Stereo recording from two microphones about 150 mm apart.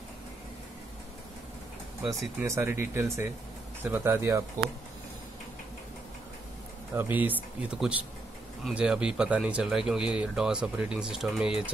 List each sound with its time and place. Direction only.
2.0 s speech: 20° right (ahead or behind)
7.0 s speech: 10° right (ahead or behind)